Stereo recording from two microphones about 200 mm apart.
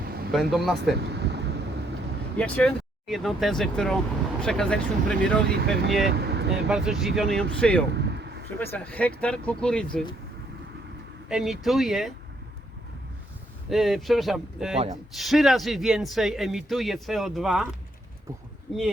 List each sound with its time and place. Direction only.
0.3 s speech: centre (ahead or behind)
1.0 s a sound: 55° right (ahead or behind)
2.4 s speech: 5° left (ahead or behind)
5.5 s speech: 55° right (ahead or behind)
6.1 s vehicle: 55° right (ahead or behind)
6.7 s speech: 5° right (ahead or behind)
7.9 s a sound: 60° right (ahead or behind)
8.5 s speech: 10° left (ahead or behind)
11.3 s speech: centre (ahead or behind)
13.7 s speech: centre (ahead or behind)